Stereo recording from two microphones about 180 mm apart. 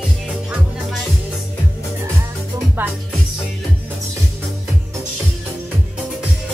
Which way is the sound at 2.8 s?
10° right (ahead or behind).